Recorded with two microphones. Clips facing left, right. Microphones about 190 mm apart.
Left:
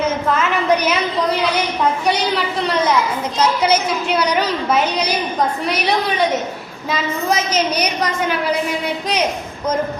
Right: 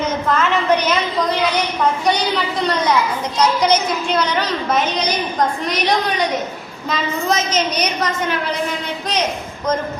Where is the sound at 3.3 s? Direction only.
5° left (ahead or behind).